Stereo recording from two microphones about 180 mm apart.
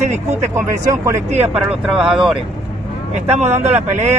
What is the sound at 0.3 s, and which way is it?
Speech, 15° right (ahead or behind).